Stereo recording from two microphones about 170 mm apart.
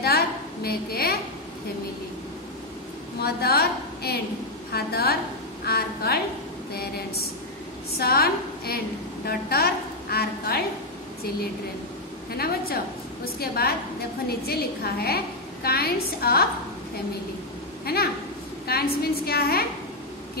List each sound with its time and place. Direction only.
0.7 s a woman's voice: 65° left (ahead or behind)
3.2 s a woman's voice: 65° left (ahead or behind)
12.3 s a woman's voice: 65° left (ahead or behind)
17.8 s a woman's voice: 65° left (ahead or behind)